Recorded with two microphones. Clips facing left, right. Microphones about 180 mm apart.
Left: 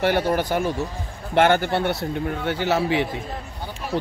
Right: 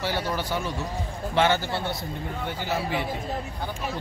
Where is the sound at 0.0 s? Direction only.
55° left (ahead or behind); by 3.1 s 80° left.